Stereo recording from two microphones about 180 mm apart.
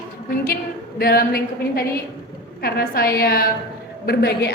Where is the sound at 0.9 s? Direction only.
55° left (ahead or behind).